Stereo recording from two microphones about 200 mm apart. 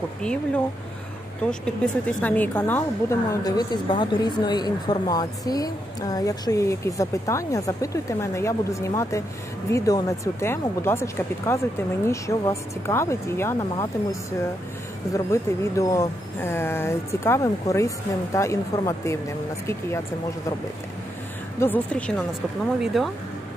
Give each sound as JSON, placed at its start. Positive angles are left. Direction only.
{"t": 1.4, "sound": "a woman's voice", "side_deg": 5}
{"t": 15.1, "sound": "a woman's voice", "side_deg": 15}
{"t": 21.5, "sound": "a woman's voice", "side_deg": 10}